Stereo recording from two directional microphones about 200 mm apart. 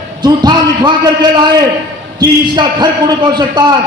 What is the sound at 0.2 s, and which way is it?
A man's voice, 20° right (ahead or behind).